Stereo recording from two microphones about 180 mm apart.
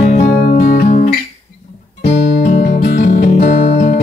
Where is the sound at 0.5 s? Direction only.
40° left (ahead or behind).